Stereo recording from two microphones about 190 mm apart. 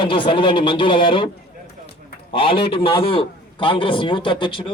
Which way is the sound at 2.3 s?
25° left (ahead or behind).